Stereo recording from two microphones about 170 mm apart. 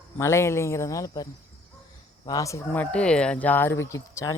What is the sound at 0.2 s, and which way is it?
Speech, 15° left (ahead or behind).